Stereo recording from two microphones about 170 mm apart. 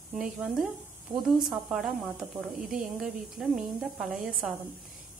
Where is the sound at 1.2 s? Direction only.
5° right (ahead or behind).